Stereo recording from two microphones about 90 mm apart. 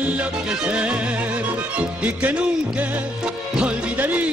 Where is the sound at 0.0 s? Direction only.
15° right (ahead or behind).